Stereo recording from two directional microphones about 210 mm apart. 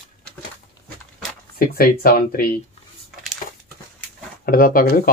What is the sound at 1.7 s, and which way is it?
Speech, 45° left (ahead or behind).